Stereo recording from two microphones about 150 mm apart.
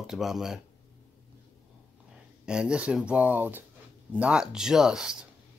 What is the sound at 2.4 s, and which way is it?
Speech, 5° right (ahead or behind).